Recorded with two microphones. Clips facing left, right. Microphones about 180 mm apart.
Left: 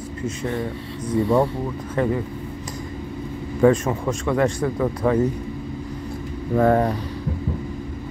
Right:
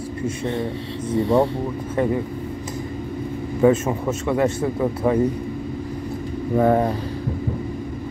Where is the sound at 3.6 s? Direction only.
5° right (ahead or behind).